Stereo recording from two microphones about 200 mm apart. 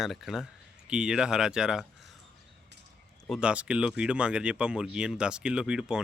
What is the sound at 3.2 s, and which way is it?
Speech, centre (ahead or behind).